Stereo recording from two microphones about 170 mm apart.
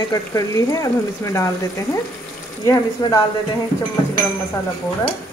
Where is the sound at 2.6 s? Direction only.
20° left (ahead or behind).